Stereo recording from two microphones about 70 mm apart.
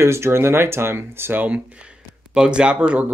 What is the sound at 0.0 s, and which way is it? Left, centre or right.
Speech, right.